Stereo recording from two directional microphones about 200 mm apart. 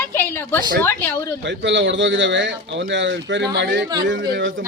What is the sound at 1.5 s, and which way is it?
Speech, 65° right (ahead or behind).